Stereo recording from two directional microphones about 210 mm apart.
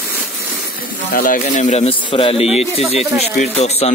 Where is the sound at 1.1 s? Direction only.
40° left (ahead or behind).